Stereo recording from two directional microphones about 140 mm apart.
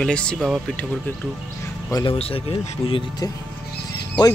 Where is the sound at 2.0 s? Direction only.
45° left (ahead or behind).